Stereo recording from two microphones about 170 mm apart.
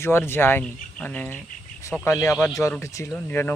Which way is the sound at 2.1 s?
20° left (ahead or behind).